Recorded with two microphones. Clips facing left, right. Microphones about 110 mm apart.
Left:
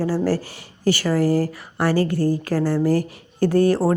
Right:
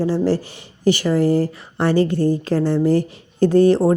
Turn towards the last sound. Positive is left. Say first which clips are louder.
# right 4 dB
turn(degrees=-25)  # may be behind; listen again after turning